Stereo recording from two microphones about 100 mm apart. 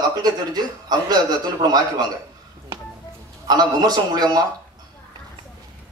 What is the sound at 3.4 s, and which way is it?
Speech, 45° right (ahead or behind).